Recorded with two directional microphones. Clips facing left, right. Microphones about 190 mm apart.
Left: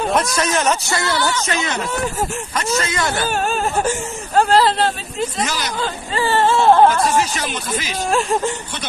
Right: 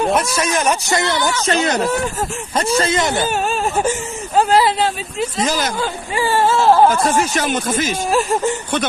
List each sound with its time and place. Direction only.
0.1 s speech: 10° right (ahead or behind)
1.4 s speech: 35° right (ahead or behind); by 3.3 s 20° right (ahead or behind)
4.4 s speech: 10° right (ahead or behind)
5.4 s speech: 40° right (ahead or behind)
5.8 s speech: 10° right (ahead or behind)
6.5 s a sound: centre (ahead or behind)
7.1 s speech: 50° right (ahead or behind)
8.1 s a sound: centre (ahead or behind)